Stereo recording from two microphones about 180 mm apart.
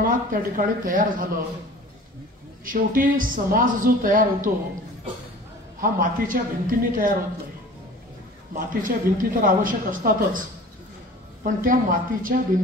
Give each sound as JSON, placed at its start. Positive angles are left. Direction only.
{"t": 0.0, "sound": "a woman's voice", "side_deg": -50}
{"t": 2.6, "sound": "a woman's voice", "side_deg": -50}
{"t": 5.8, "sound": "a woman's voice", "side_deg": -50}
{"t": 8.5, "sound": "a woman's voice", "side_deg": -50}
{"t": 11.4, "sound": "a woman's voice", "side_deg": -50}